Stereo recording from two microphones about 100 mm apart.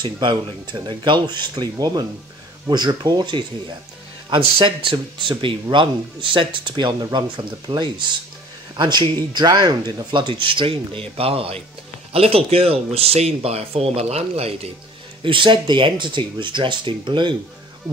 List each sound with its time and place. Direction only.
0.0 s speech: 50° right (ahead or behind); by 14.7 s 90° right
15.2 s speech: 55° right (ahead or behind)